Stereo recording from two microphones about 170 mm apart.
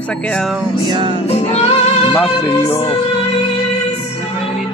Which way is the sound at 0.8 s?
25° right (ahead or behind).